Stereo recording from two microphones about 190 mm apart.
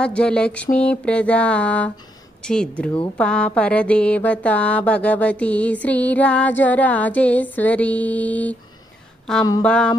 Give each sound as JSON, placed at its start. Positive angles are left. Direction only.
{"t": 0.0, "sound": "mantra", "side_deg": 5}
{"t": 9.6, "sound": "mantra", "side_deg": 5}